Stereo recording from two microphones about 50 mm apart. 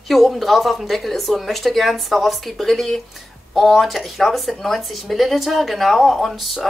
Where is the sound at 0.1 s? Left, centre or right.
Centre.